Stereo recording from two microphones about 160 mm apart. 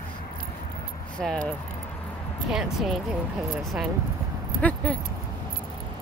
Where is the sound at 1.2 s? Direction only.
Centre (ahead or behind).